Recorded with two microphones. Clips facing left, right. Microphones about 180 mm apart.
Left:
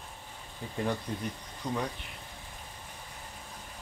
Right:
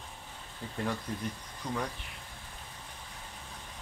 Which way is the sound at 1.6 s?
20° left (ahead or behind).